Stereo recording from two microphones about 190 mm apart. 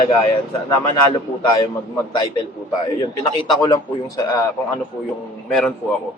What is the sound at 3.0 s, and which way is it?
Speech, 25° left (ahead or behind).